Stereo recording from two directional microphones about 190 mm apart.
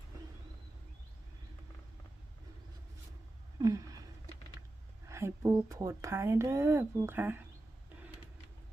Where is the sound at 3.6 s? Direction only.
20° right (ahead or behind).